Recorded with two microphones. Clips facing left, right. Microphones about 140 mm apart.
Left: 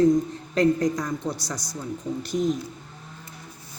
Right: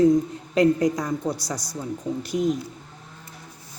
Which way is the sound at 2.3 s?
10° right (ahead or behind).